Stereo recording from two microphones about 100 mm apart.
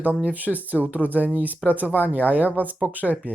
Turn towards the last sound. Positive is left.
turn(degrees=-15)  # may be behind; listen again after turning